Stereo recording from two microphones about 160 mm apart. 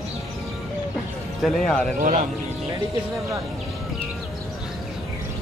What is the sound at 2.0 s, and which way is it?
Speech, 55° right (ahead or behind).